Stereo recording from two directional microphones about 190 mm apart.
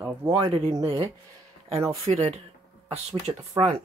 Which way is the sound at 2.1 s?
35° right (ahead or behind).